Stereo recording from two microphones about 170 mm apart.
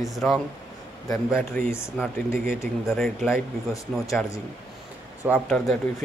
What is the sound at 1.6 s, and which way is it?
Speech, 15° left (ahead or behind).